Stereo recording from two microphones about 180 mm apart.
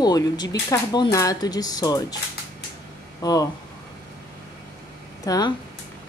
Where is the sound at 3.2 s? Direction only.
20° left (ahead or behind).